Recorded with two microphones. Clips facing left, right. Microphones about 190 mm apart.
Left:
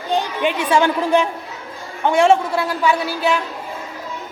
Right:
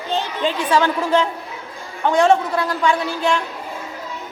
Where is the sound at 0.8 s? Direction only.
15° left (ahead or behind).